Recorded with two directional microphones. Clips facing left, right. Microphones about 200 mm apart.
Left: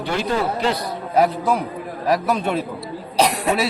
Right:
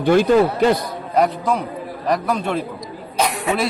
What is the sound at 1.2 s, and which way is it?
A man's voice, 5° left (ahead or behind).